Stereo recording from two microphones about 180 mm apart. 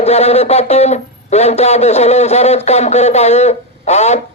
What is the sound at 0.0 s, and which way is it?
Speech, 35° left (ahead or behind).